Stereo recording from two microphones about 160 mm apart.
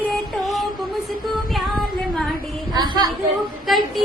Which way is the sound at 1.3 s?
Centre (ahead or behind).